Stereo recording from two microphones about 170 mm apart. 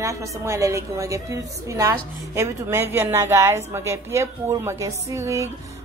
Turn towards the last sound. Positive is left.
turn(degrees=-15)  # may be behind; listen again after turning